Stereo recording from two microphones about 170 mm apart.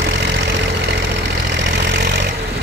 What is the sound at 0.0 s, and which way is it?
Engine, 90° right.